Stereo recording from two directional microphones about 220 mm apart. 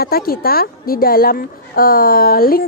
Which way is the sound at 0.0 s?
45° left (ahead or behind).